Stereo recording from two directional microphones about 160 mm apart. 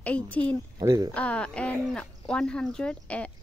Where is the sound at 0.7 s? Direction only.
20° right (ahead or behind).